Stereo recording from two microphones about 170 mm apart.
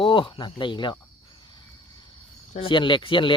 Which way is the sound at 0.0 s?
30° left (ahead or behind).